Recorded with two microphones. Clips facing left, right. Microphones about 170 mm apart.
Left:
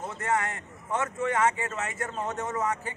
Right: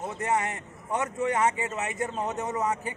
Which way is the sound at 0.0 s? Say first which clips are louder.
Right 1 dB; 20° right (ahead or behind).